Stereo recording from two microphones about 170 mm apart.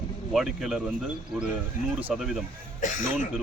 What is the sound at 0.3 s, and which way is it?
Speech, centre (ahead or behind).